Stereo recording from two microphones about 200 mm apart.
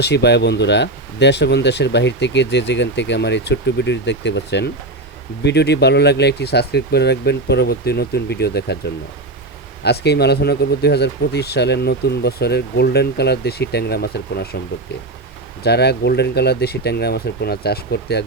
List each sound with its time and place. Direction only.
0.0 s speech: 55° left (ahead or behind)
9.8 s speech: 55° left (ahead or behind)
15.6 s speech: 55° left (ahead or behind)